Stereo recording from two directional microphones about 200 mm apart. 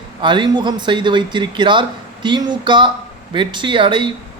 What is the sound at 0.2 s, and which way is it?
A man's voice, 25° right (ahead or behind).